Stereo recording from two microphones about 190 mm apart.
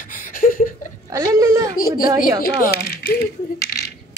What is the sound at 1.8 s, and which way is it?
Speech, 50° left (ahead or behind).